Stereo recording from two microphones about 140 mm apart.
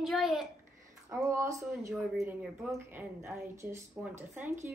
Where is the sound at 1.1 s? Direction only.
20° right (ahead or behind).